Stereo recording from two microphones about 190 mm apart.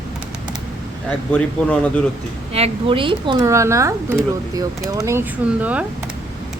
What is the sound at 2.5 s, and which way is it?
Speech, 30° right (ahead or behind).